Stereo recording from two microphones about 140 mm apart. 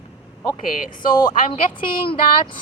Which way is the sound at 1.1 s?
30° left (ahead or behind).